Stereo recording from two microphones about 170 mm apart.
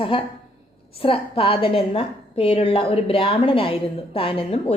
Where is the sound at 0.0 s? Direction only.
30° left (ahead or behind).